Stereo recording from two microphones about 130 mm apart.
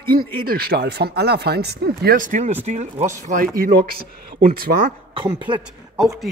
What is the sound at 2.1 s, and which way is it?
Speech, 80° right.